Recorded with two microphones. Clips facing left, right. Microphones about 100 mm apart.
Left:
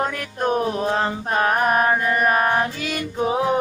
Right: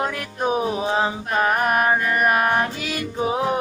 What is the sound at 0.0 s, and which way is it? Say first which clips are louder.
Music: left 1 dB; 5° right (ahead or behind).